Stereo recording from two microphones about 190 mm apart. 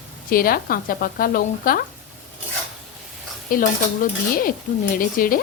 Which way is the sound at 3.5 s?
45° left (ahead or behind).